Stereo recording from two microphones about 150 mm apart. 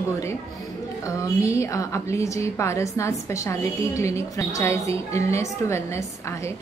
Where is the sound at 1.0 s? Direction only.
20° left (ahead or behind).